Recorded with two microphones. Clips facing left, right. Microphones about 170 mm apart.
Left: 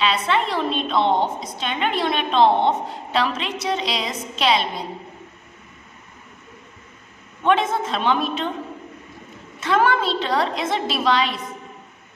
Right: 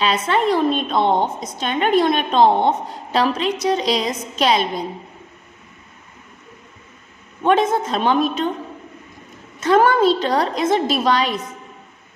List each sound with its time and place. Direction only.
0.0 s a woman's voice: 40° right (ahead or behind)
7.4 s a woman's voice: 40° right (ahead or behind)
9.6 s a woman's voice: 40° right (ahead or behind)